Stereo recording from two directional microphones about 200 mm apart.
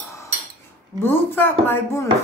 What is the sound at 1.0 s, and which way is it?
Speech, 10° left (ahead or behind).